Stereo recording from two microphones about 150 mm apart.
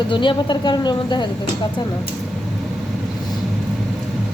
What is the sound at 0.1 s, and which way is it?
Speech, 35° left (ahead or behind).